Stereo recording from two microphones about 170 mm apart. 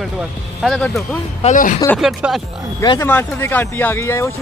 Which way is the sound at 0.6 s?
Centre (ahead or behind).